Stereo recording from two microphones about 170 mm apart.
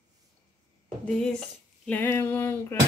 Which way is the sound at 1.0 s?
5° left (ahead or behind).